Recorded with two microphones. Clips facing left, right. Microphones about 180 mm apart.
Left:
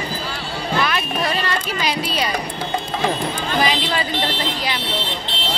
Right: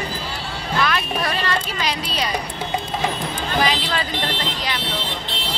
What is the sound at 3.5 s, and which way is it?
Speech, centre (ahead or behind).